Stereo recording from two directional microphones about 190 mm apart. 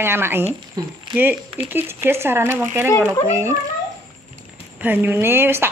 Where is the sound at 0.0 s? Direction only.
10° right (ahead or behind).